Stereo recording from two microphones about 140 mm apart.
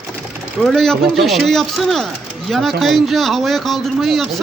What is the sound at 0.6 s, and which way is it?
Speech, centre (ahead or behind).